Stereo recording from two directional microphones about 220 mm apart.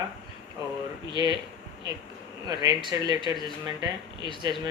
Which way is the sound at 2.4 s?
20° right (ahead or behind).